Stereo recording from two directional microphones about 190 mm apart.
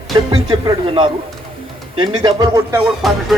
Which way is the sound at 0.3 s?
25° right (ahead or behind).